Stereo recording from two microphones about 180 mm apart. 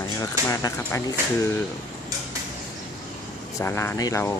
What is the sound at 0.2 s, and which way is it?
Speech, 20° left (ahead or behind).